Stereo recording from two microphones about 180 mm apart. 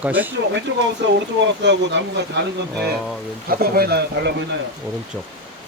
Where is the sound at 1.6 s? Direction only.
75° right (ahead or behind).